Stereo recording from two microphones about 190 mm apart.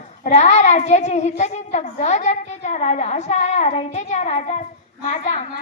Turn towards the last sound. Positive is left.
turn(degrees=40)  # may be behind; listen again after turning